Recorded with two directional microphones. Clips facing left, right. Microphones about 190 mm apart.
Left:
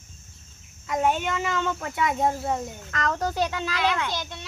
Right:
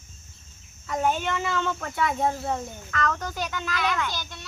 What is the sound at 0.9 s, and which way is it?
Speech, 15° left (ahead or behind).